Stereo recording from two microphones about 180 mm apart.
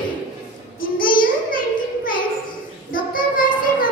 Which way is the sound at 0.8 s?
50° left (ahead or behind).